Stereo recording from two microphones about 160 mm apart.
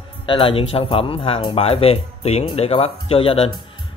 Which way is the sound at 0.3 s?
35° left (ahead or behind).